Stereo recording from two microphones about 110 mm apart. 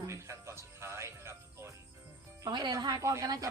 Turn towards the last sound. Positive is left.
turn(degrees=-30)  # may be behind; listen again after turning